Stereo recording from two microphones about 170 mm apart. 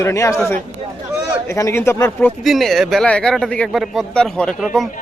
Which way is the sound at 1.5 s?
15° left (ahead or behind).